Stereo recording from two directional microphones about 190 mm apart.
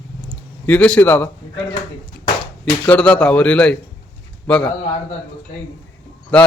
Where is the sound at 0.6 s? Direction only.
10° left (ahead or behind).